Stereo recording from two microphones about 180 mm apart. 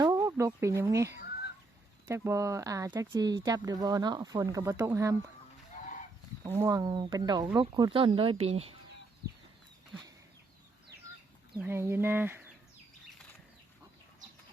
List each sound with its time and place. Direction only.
0.0 s speech: 15° right (ahead or behind)
1.2 s goose: 65° left (ahead or behind)
2.0 s speech: 15° right (ahead or behind)
6.4 s speech: 15° right (ahead or behind); by 8.7 s 35° right (ahead or behind)
11.6 s speech: 15° right (ahead or behind)